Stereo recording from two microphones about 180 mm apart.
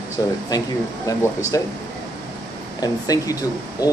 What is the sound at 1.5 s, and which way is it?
Speech, 20° left (ahead or behind).